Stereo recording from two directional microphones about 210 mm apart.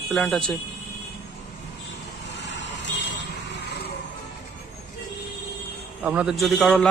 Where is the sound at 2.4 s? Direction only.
60° left (ahead or behind).